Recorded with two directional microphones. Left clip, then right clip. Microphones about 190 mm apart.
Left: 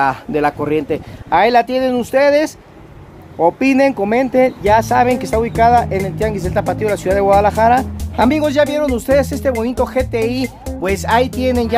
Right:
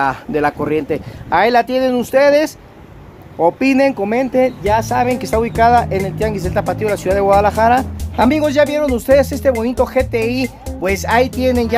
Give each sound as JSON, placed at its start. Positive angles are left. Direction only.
{"t": 0.0, "sound": "speech", "side_deg": 5}
{"t": 5.1, "sound": "speech", "side_deg": 0}